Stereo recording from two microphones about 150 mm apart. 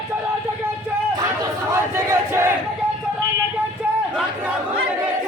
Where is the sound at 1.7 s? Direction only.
20° right (ahead or behind).